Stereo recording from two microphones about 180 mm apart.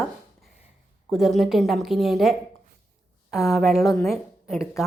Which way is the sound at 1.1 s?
Centre (ahead or behind).